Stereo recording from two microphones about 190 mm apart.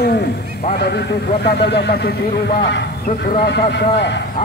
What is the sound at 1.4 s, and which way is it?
Speech, 55° left (ahead or behind).